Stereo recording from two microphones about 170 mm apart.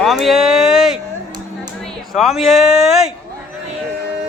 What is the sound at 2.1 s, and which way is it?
Speech, centre (ahead or behind).